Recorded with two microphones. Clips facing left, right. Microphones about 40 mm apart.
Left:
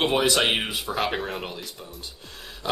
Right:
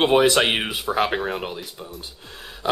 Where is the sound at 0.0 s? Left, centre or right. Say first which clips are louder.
Right 5 dB; centre.